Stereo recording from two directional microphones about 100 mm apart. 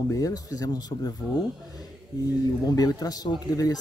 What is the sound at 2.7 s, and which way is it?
Speech, 40° left (ahead or behind).